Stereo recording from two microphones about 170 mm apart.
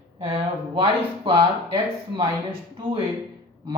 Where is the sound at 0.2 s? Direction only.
30° right (ahead or behind).